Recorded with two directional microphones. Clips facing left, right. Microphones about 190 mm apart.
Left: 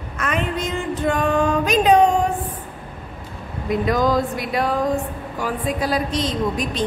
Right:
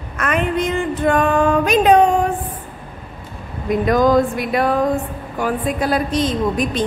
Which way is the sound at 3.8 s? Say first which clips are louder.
Right 6 dB; 50° right (ahead or behind).